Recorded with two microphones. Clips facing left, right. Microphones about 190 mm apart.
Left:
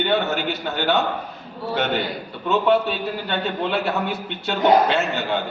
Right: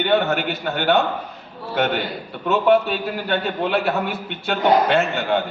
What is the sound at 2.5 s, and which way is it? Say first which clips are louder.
A man's voice: right 2 dB; centre (ahead or behind).